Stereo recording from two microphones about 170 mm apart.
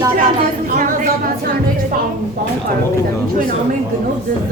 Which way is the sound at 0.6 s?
50° right (ahead or behind).